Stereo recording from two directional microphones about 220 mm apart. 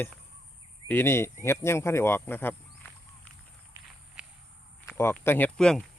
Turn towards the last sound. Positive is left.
turn(degrees=5)  # may be behind; listen again after turning